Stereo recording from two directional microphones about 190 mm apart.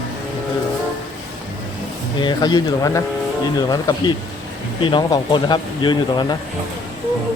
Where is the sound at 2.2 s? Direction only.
20° left (ahead or behind).